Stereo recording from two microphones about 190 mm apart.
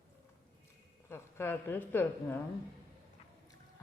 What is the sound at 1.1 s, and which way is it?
A woman's voice, 10° left (ahead or behind).